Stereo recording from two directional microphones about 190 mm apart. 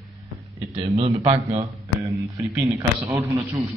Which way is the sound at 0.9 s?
30° right (ahead or behind).